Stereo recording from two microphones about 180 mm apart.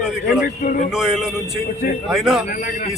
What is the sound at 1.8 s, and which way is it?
Speech, 50° left (ahead or behind).